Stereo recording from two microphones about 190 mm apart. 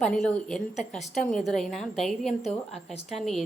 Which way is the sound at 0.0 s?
5° left (ahead or behind).